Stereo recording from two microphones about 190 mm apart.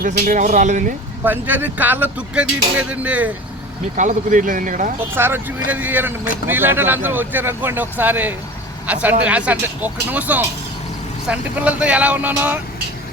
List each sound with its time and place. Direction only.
0.0 s speech: 45° right (ahead or behind)
1.2 s speech: 10° right (ahead or behind)
3.9 s speech: 40° right (ahead or behind)
5.1 s speech: 10° right (ahead or behind)